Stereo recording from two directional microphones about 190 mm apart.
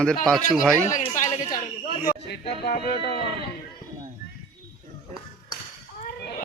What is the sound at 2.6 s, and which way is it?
Speech, 55° left (ahead or behind).